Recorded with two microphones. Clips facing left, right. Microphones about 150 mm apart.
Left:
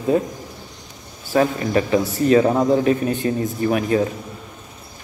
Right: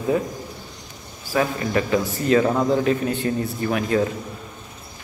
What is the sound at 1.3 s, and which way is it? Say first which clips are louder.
Speech: left 4 dB; 35° left (ahead or behind).